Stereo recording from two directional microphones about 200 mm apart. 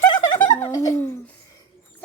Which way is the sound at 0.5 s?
15° left (ahead or behind).